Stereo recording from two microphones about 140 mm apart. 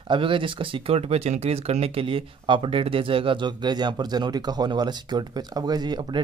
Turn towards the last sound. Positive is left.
turn(degrees=-30)  # may be behind; listen again after turning